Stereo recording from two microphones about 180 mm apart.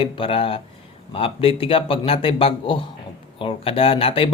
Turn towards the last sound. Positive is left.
turn(degrees=30)  # may be behind; listen again after turning